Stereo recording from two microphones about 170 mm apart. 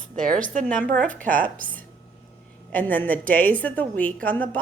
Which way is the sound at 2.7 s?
10° left (ahead or behind).